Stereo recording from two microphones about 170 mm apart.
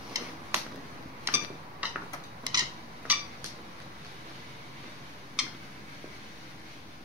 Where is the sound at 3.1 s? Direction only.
10° right (ahead or behind).